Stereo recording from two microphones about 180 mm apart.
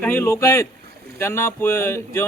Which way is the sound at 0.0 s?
10° left (ahead or behind).